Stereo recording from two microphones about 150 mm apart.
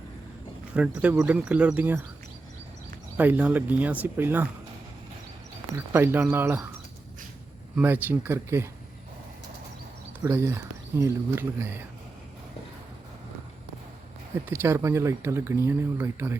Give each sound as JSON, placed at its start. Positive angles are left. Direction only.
{"t": 0.7, "sound": "speech", "side_deg": -10}
{"t": 3.2, "sound": "speech", "side_deg": -10}
{"t": 5.7, "sound": "speech", "side_deg": -15}
{"t": 7.8, "sound": "speech", "side_deg": -10}
{"t": 10.2, "sound": "speech", "side_deg": -15}
{"t": 14.4, "sound": "speech", "side_deg": -15}